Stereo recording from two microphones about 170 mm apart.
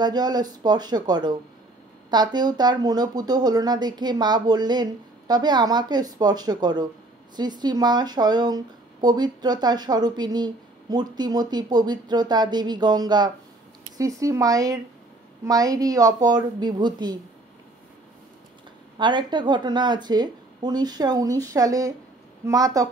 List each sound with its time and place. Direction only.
0.0 s speech: 25° right (ahead or behind)
18.9 s speech: 25° right (ahead or behind)